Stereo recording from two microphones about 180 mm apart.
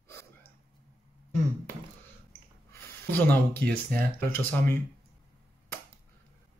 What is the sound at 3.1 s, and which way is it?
Speech, 10° left (ahead or behind).